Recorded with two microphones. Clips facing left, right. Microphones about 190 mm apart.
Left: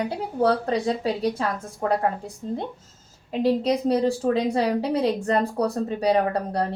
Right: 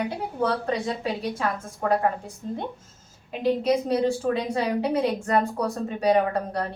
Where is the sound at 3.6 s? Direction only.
35° left (ahead or behind).